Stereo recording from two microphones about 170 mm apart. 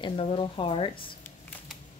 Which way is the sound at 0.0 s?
30° left (ahead or behind).